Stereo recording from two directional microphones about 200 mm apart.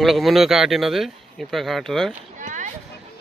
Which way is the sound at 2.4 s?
40° right (ahead or behind).